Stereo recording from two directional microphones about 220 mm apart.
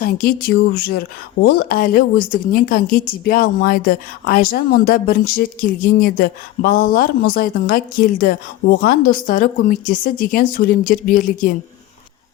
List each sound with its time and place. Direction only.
0.0 s speech: 40° left (ahead or behind)